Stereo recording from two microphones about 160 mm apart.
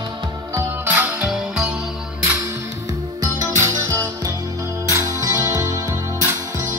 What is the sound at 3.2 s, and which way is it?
Music, 20° right (ahead or behind).